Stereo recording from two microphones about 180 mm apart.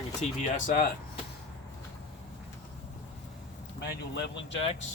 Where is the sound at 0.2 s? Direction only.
40° left (ahead or behind).